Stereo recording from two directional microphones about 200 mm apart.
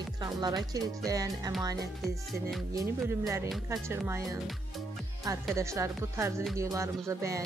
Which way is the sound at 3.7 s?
15° right (ahead or behind).